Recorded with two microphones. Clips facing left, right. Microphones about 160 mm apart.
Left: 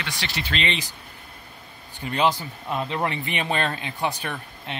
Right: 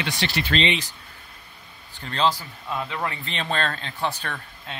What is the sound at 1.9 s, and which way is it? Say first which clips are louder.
Speech: left 1 dB; 15° left (ahead or behind).